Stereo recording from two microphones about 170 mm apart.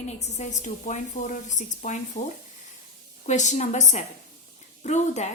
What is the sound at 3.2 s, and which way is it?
A woman's voice, 45° left (ahead or behind).